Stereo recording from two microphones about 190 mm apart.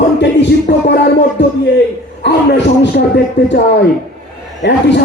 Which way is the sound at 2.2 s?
65° left (ahead or behind).